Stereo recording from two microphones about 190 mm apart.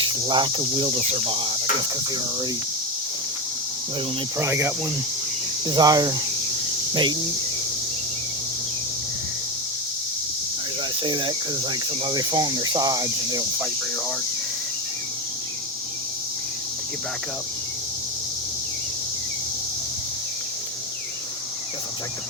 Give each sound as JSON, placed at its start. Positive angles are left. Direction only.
{"t": 0.3, "sound": "speech", "side_deg": -25}
{"t": 4.4, "sound": "speech", "side_deg": -15}
{"t": 11.0, "sound": "speech", "side_deg": -25}